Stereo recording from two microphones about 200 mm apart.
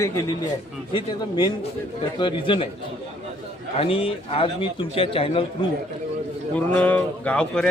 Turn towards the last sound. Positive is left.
turn(degrees=5)  # may be behind; listen again after turning